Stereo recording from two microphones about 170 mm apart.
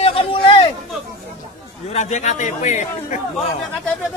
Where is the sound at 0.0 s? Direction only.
35° left (ahead or behind).